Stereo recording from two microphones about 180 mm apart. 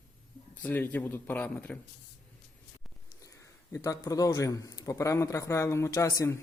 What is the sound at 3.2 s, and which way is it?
A man's voice, 15° left (ahead or behind).